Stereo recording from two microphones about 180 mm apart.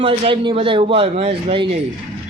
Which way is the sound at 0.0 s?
30° right (ahead or behind).